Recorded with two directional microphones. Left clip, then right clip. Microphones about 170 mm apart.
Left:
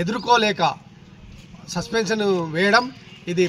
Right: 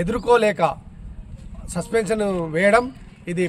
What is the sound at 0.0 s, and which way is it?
A man's voice, 40° right (ahead or behind).